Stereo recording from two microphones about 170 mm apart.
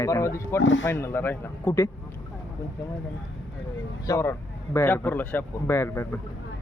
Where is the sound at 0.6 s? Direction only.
90° left.